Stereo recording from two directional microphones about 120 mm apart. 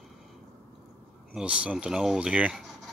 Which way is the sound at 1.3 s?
10° right (ahead or behind).